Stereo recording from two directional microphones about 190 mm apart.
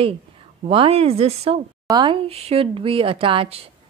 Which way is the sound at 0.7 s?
30° right (ahead or behind).